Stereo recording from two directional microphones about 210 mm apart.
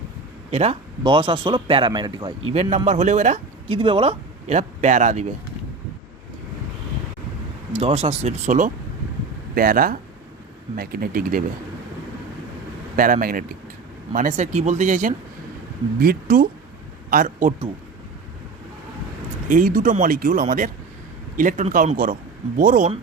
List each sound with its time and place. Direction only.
0.5 s speech: 30° right (ahead or behind)
2.5 s speech: 30° right (ahead or behind)
7.7 s speech: 30° right (ahead or behind)
13.0 s speech: 40° right (ahead or behind)
19.5 s speech: 40° right (ahead or behind)